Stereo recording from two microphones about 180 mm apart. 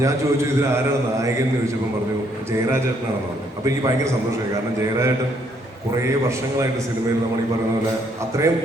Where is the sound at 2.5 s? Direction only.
15° right (ahead or behind).